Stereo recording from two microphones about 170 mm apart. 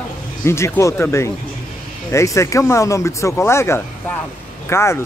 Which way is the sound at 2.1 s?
15° left (ahead or behind).